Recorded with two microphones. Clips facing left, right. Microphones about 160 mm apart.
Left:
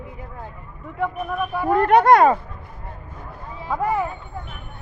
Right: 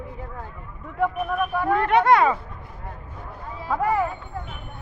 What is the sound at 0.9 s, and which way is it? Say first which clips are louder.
Speech: right 1 dB; centre (ahead or behind).